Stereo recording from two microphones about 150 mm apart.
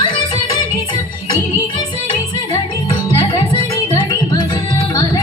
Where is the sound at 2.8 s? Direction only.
35° left (ahead or behind).